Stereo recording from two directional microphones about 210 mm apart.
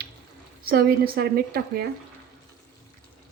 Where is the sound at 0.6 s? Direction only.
45° right (ahead or behind).